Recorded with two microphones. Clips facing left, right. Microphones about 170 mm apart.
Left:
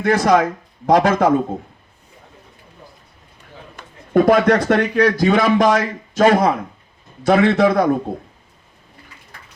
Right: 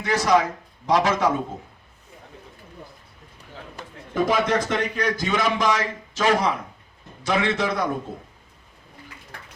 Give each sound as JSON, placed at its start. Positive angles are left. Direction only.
{"t": 0.0, "sound": "speech", "side_deg": 55}
{"t": 4.1, "sound": "speech", "side_deg": 60}